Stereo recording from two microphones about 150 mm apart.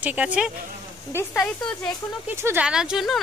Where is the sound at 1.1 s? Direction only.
15° left (ahead or behind).